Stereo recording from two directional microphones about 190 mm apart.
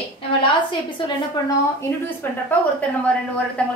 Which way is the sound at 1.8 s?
10° left (ahead or behind).